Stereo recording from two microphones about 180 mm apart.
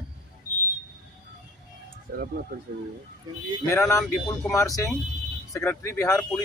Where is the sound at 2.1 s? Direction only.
60° right (ahead or behind).